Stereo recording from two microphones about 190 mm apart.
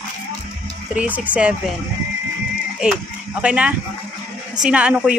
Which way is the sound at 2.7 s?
5° right (ahead or behind).